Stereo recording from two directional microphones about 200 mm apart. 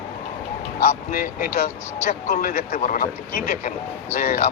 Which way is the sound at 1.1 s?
45° left (ahead or behind).